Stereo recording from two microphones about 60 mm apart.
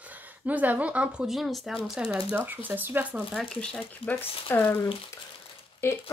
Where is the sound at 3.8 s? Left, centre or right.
Left.